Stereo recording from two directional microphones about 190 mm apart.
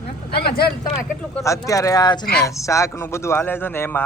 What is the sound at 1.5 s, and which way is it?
Speech, 15° left (ahead or behind).